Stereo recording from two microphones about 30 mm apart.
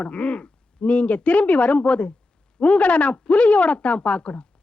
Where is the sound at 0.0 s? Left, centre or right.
Left.